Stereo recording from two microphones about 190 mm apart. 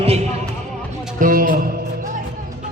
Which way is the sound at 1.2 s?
45° right (ahead or behind).